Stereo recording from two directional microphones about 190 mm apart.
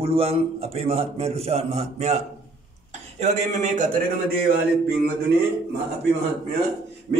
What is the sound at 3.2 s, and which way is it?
Speech, 40° right (ahead or behind).